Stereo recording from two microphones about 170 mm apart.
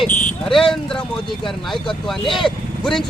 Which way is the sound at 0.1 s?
45° left (ahead or behind).